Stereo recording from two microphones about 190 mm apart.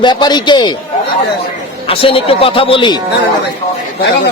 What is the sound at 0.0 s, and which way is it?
Speech, 25° left (ahead or behind).